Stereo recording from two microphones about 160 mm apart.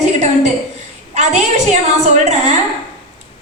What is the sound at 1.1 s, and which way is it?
A woman's voice, 45° right (ahead or behind).